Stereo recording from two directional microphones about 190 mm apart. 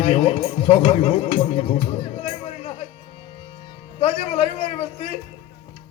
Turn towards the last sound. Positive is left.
turn(degrees=35)  # may be behind; listen again after turning